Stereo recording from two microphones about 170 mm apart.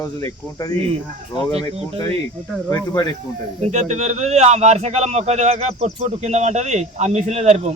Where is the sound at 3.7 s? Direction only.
40° right (ahead or behind).